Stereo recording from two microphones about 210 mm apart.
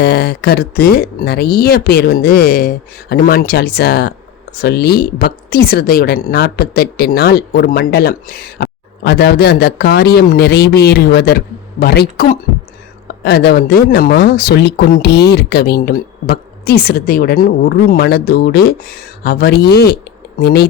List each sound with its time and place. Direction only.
0.0 s speech: 50° left (ahead or behind)